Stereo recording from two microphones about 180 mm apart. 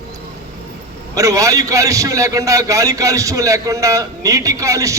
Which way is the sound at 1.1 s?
15° right (ahead or behind).